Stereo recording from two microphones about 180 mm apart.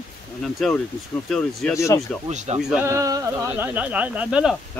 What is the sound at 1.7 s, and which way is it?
Speech, 15° left (ahead or behind).